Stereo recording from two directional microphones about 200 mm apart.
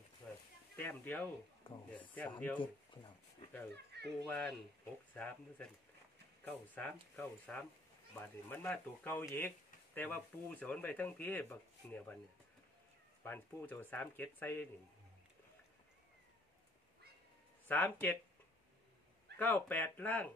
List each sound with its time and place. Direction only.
0.2 s a sound: 5° left (ahead or behind)
0.7 s speech: 10° left (ahead or behind)
1.6 s speech: 25° left (ahead or behind)
2.1 s speech: 10° left (ahead or behind)
2.6 s speech: 25° left (ahead or behind)
3.7 s speech: 55° right (ahead or behind)
4.3 s speech: 5° left (ahead or behind)
13.2 s speech: 10° left (ahead or behind)
17.6 s speech: 10° left (ahead or behind)
19.3 s speech: 10° left (ahead or behind)